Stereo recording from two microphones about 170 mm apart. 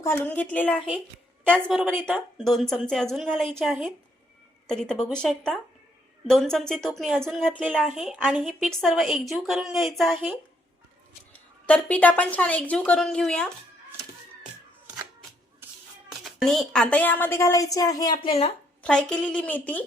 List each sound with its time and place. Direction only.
0.0 s a woman's voice: 10° left (ahead or behind)
1.6 s a woman's voice: 5° right (ahead or behind)
11.6 s a woman's voice: 10° left (ahead or behind)
16.2 s a woman's voice: centre (ahead or behind); by 18.5 s 35° left (ahead or behind)
18.8 s a woman's voice: 5° left (ahead or behind)